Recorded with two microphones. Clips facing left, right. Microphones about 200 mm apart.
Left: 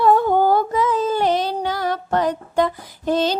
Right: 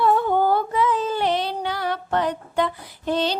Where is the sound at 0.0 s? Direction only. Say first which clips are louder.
Left 4 dB; 40° left (ahead or behind).